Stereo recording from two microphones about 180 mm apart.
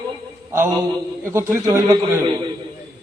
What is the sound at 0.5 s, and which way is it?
A man's voice, 15° right (ahead or behind).